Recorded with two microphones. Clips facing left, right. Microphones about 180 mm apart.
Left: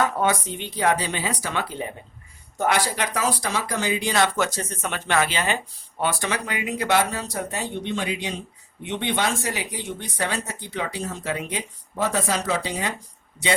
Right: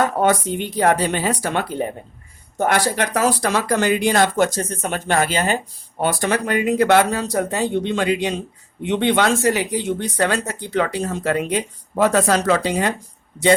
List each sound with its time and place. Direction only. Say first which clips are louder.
0.0 s speech: right 5 dB; 50° right (ahead or behind)